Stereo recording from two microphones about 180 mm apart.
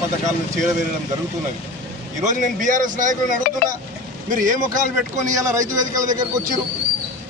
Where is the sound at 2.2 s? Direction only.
45° right (ahead or behind).